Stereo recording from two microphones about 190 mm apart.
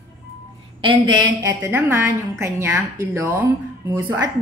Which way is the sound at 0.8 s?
25° right (ahead or behind).